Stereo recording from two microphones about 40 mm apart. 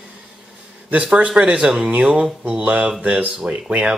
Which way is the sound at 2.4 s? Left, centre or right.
Right.